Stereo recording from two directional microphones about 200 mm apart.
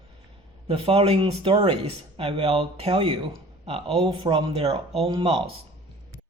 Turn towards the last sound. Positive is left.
turn(degrees=-25)  # may be behind; listen again after turning